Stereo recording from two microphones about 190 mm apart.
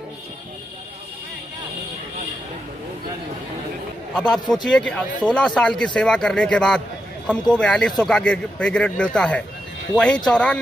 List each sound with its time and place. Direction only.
4.1 s speech: centre (ahead or behind)